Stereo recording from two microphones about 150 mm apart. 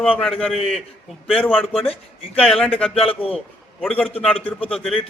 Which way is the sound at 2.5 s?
5° left (ahead or behind).